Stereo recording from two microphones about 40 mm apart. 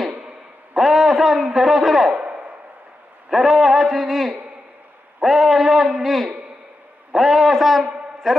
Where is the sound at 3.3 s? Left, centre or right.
Centre.